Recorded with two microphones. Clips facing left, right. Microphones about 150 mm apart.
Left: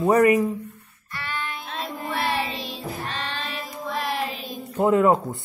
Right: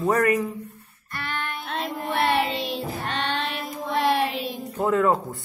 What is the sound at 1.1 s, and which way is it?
Music, 55° right (ahead or behind).